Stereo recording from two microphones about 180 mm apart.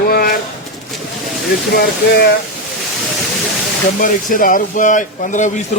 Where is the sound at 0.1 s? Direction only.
55° left (ahead or behind).